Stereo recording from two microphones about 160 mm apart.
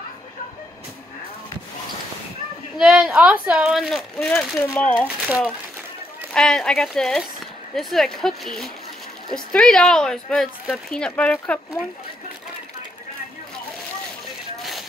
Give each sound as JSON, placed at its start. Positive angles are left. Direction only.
{"t": 2.8, "sound": "speech", "side_deg": -5}
{"t": 5.0, "sound": "speech", "side_deg": -10}
{"t": 6.3, "sound": "speech", "side_deg": 5}
{"t": 14.6, "sound": "a sound", "side_deg": 0}